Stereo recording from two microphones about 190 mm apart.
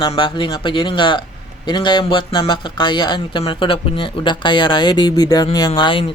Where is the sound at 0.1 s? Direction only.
25° left (ahead or behind).